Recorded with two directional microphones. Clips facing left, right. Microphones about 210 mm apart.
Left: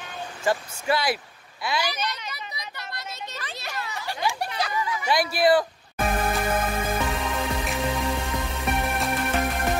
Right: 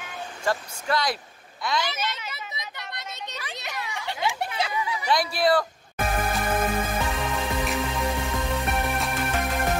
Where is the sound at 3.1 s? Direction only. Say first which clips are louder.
Even; 20° right (ahead or behind).